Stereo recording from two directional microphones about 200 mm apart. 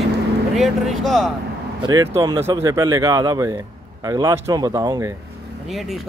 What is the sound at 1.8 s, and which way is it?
Speech, 15° right (ahead or behind).